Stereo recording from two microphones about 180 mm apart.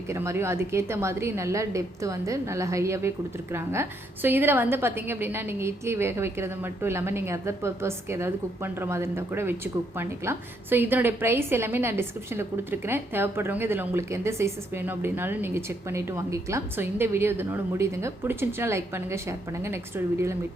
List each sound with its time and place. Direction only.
0.1 s a woman's voice: 15° right (ahead or behind)